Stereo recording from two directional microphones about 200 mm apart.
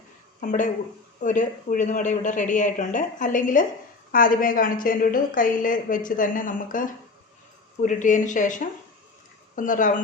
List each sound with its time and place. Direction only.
0.4 s a woman's voice: 40° left (ahead or behind)